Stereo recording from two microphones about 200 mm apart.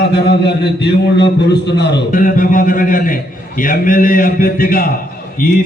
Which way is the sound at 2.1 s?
40° left (ahead or behind).